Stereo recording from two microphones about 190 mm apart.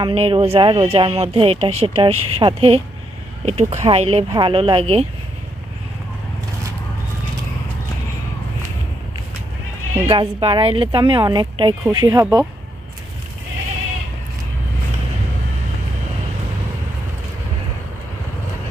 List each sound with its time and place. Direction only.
0.0 s speech: 30° right (ahead or behind)
10.1 s speech: 25° right (ahead or behind)